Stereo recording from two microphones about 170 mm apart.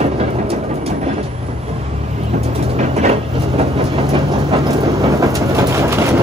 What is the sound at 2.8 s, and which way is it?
Train, 40° right (ahead or behind).